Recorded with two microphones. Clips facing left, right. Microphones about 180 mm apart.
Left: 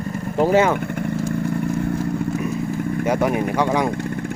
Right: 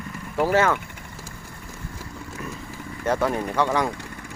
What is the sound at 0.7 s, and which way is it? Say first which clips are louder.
Vehicle: left 15 dB; 60° left (ahead or behind).